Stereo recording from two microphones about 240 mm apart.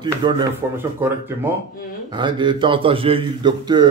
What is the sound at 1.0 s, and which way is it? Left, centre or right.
Speech, centre.